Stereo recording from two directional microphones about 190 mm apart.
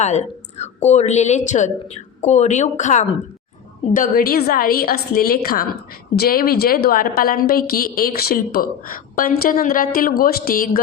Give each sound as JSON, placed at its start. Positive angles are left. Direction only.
{"t": 0.0, "sound": "a woman's voice", "side_deg": 35}